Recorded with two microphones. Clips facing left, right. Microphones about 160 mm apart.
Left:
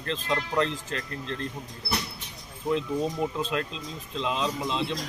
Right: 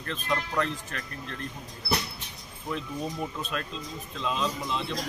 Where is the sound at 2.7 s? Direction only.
20° left (ahead or behind).